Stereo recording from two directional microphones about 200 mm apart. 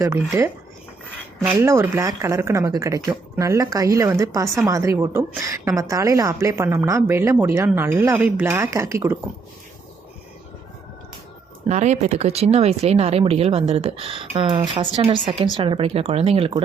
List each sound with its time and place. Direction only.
0.0 s a woman's voice: 15° right (ahead or behind)
1.5 s a woman's voice: 15° right (ahead or behind)
11.7 s speech: 35° right (ahead or behind)